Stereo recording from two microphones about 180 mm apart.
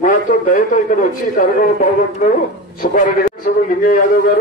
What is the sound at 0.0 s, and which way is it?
A man's voice, 45° left (ahead or behind).